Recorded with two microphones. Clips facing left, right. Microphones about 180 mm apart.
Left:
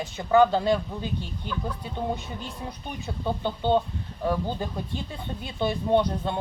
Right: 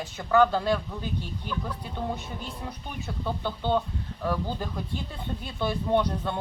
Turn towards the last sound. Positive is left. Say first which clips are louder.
# left 2 dB
turn(degrees=20)  # may be behind; listen again after turning